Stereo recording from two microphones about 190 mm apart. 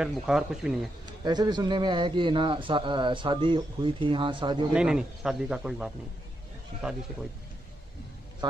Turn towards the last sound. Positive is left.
turn(degrees=0)  # may be behind; listen again after turning